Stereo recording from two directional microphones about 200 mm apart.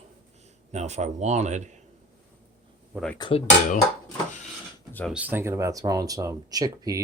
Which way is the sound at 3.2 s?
25° left (ahead or behind).